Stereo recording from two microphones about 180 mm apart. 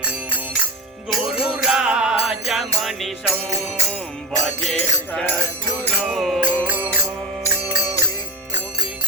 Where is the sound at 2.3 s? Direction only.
Centre (ahead or behind).